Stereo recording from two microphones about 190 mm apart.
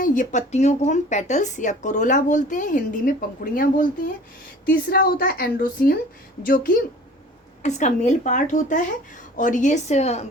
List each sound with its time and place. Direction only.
0.0 s a woman's voice: 40° left (ahead or behind)